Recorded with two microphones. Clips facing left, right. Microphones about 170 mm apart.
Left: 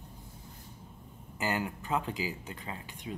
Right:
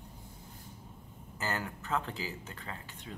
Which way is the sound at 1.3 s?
15° left (ahead or behind).